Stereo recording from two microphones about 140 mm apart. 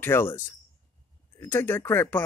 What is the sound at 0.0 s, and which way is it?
Speech, 15° left (ahead or behind).